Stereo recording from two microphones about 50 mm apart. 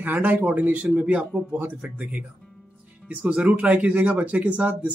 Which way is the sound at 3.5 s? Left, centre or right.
Right.